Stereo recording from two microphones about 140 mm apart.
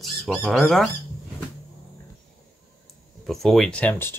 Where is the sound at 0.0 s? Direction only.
Centre (ahead or behind).